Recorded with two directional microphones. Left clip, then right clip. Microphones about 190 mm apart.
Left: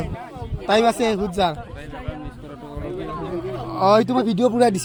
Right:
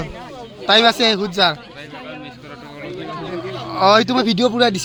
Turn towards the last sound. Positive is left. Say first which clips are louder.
# right 2 dB
turn(degrees=0)  # may be behind; listen again after turning